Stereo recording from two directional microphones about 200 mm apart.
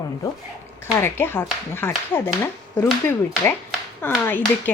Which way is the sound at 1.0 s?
10° left (ahead or behind).